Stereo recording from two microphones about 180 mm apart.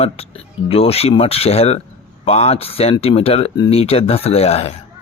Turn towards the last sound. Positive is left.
turn(degrees=35)  # may be behind; listen again after turning